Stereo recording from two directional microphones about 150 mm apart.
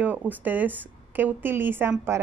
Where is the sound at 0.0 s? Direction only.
10° right (ahead or behind).